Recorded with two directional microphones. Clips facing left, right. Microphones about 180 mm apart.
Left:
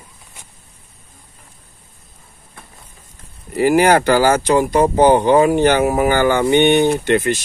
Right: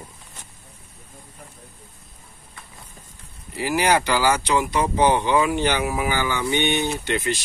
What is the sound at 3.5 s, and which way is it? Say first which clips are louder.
Speech: left 8 dB; 55° left (ahead or behind).